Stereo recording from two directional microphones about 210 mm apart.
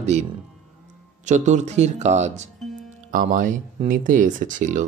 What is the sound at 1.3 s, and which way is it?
Speech, 35° right (ahead or behind).